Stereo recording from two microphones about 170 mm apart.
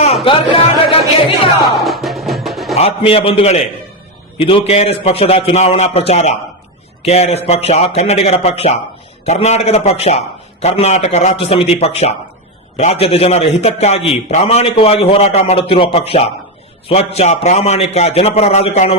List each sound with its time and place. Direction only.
0.3 s a sound: 30° left (ahead or behind)
1.7 s music: centre (ahead or behind)
2.7 s a man's voice: 35° left (ahead or behind)